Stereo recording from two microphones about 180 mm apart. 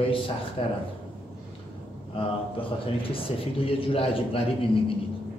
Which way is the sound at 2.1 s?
30° left (ahead or behind).